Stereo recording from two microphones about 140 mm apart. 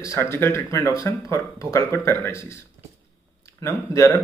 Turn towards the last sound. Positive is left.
turn(degrees=25)  # may be behind; listen again after turning